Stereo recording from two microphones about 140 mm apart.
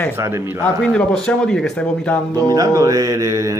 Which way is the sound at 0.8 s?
5° left (ahead or behind).